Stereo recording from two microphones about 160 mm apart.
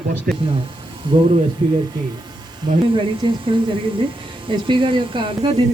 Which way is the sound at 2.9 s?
30° right (ahead or behind).